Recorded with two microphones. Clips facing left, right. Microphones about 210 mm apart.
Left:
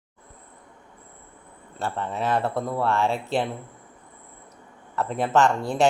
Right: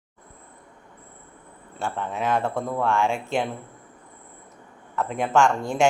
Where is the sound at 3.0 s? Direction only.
35° left (ahead or behind).